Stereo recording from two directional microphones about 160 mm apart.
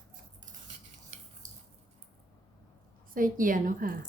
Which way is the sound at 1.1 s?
40° right (ahead or behind).